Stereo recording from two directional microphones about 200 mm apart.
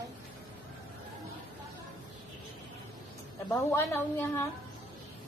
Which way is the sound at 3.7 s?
10° left (ahead or behind).